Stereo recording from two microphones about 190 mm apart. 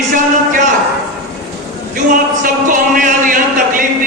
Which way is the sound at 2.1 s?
45° right (ahead or behind).